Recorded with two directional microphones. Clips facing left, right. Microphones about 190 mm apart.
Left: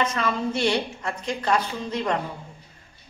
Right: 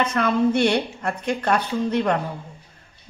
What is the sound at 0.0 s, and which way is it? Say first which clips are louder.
A woman's voice: right 5 dB; 55° right (ahead or behind).